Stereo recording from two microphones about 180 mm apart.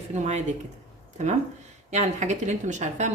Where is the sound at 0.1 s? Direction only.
40° right (ahead or behind).